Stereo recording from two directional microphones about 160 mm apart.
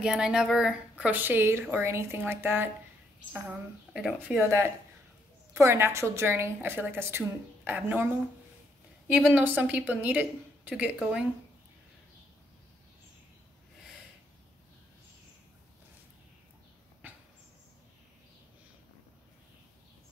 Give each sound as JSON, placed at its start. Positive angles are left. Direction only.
{"t": 0.0, "sound": "a woman's voice", "side_deg": -5}
{"t": 3.4, "sound": "a woman's voice", "side_deg": 0}
{"t": 4.4, "sound": "a woman's voice", "side_deg": -15}
{"t": 9.1, "sound": "a woman's voice", "side_deg": -5}